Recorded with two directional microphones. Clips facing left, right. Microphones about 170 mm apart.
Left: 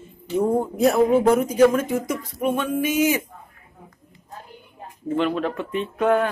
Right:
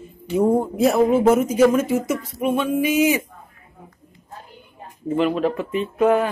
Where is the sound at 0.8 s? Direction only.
Centre (ahead or behind).